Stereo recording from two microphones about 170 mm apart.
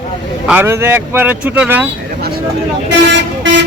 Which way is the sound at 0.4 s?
10° right (ahead or behind).